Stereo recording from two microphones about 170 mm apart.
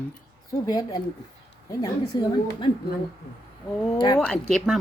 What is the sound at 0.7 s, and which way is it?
A woman's voice, 20° left (ahead or behind).